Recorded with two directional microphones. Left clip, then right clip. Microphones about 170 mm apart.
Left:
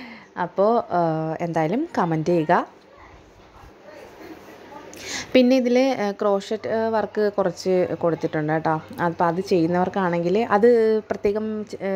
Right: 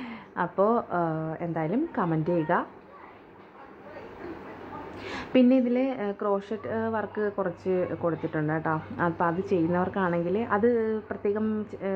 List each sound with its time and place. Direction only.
0.4 s speech: 30° left (ahead or behind)
5.0 s speech: 25° left (ahead or behind)